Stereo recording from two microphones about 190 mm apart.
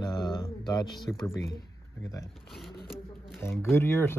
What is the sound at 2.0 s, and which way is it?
Speech, 15° left (ahead or behind).